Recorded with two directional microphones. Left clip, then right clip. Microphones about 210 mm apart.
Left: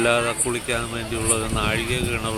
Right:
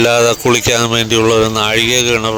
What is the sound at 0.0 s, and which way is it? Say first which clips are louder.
Speech: right 10 dB; 50° right (ahead or behind).